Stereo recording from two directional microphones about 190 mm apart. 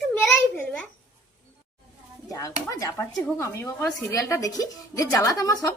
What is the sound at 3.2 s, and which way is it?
A woman's voice, 15° left (ahead or behind).